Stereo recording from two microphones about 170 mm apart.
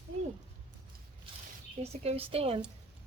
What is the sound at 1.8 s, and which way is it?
Speech, 35° right (ahead or behind).